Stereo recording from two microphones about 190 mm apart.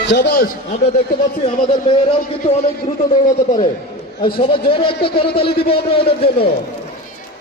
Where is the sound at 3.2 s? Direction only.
40° left (ahead or behind).